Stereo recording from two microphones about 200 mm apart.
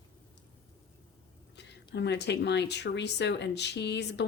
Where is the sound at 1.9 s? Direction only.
60° left (ahead or behind).